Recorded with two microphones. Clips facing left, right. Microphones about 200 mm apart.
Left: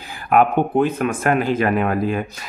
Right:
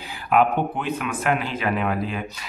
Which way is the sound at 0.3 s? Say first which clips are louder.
Left 4 dB; 50° left (ahead or behind).